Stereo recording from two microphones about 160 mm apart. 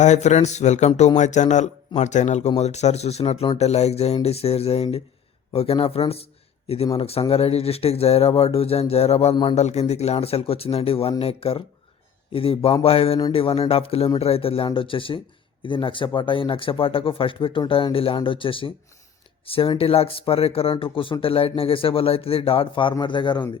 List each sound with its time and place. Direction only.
0.0 s speech: 45° left (ahead or behind); by 9.6 s 30° left (ahead or behind)
9.6 s speech: 45° left (ahead or behind)